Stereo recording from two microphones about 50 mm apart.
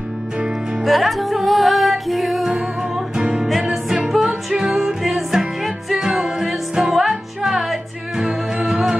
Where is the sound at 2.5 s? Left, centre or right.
Centre.